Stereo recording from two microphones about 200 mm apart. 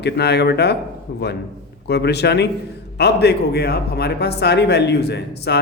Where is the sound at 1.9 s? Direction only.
55° left (ahead or behind).